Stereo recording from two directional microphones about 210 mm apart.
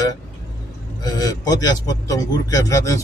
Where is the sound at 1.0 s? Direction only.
20° left (ahead or behind).